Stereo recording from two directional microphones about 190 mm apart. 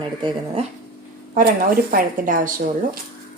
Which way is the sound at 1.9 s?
45° right (ahead or behind).